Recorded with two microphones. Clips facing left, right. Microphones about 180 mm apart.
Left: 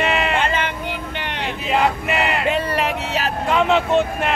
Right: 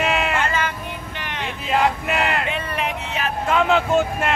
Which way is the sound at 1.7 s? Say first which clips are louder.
Left 1 dB; centre (ahead or behind).